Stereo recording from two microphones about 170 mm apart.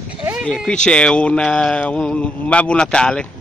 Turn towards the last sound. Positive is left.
turn(degrees=5)  # may be behind; listen again after turning